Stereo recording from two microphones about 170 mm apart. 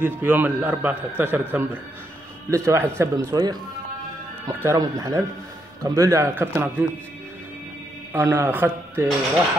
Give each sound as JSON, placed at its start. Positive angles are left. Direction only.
{"t": 0.0, "sound": "a man's voice", "side_deg": -10}
{"t": 8.1, "sound": "a man's voice", "side_deg": -15}